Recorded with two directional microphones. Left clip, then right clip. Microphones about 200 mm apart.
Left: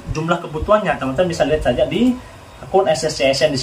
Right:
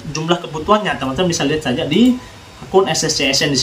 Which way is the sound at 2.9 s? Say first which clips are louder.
Left 1 dB; 5° right (ahead or behind).